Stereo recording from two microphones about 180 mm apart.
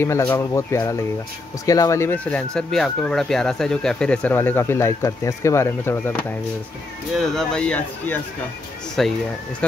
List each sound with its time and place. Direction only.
0.0 s speech: 15° left (ahead or behind)
7.2 s speech: 5° left (ahead or behind)